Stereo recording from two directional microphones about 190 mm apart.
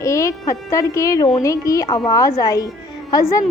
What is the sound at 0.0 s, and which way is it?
A woman's voice, 15° left (ahead or behind).